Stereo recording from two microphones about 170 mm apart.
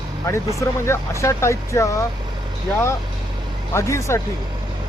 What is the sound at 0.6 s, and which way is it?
Speech, 15° left (ahead or behind).